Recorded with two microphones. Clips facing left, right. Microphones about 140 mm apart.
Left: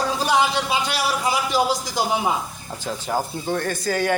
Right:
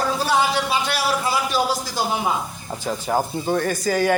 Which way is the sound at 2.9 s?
5° right (ahead or behind).